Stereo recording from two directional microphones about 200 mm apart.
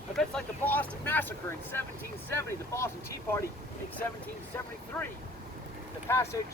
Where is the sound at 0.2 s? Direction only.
5° left (ahead or behind).